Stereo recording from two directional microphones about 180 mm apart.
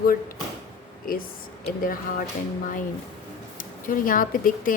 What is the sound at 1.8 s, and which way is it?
Speech, 50° left (ahead or behind).